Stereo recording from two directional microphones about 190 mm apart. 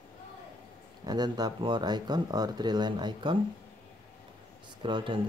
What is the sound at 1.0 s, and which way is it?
Speech, 20° right (ahead or behind).